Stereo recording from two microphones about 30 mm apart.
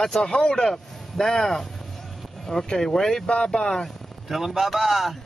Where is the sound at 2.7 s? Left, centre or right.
Centre.